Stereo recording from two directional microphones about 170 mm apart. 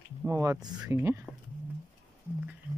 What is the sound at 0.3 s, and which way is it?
Speech, 20° right (ahead or behind).